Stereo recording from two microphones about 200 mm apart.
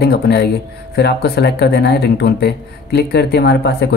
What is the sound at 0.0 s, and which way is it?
Speech, 55° left (ahead or behind).